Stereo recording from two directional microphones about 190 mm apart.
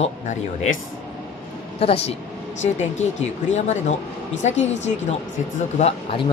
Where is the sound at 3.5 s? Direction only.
40° left (ahead or behind).